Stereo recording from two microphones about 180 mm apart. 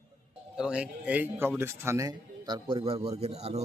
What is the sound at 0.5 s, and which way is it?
A man's voice, 5° right (ahead or behind).